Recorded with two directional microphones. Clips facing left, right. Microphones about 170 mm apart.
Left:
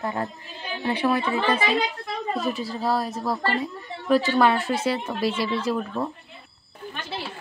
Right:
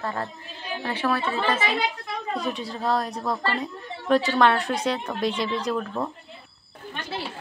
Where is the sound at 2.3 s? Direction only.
Centre (ahead or behind).